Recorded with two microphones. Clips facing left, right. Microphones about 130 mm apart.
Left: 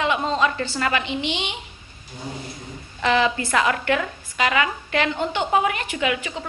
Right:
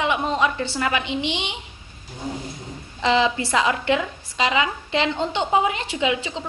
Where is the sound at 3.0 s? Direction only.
20° right (ahead or behind).